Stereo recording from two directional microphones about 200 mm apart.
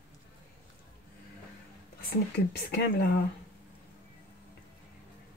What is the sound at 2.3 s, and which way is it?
Speech, 55° left (ahead or behind).